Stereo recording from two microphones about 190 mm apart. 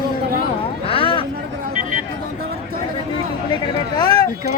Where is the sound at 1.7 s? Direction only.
40° right (ahead or behind).